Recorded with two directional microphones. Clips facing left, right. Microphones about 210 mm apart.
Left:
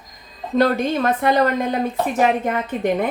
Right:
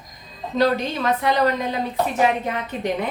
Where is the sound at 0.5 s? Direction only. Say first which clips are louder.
Left 3 dB; 50° left (ahead or behind).